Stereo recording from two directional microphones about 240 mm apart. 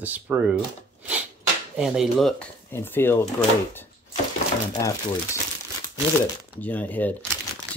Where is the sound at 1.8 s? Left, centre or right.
Centre.